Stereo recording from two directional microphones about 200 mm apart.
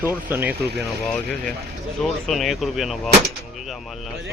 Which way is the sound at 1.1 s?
5° left (ahead or behind).